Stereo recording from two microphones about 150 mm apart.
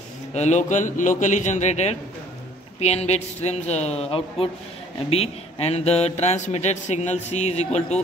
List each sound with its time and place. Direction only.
0.3 s a man's voice: 50° left (ahead or behind)